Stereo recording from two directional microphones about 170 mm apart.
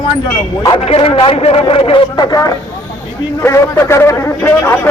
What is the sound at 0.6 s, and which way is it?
A man's voice, 30° left (ahead or behind).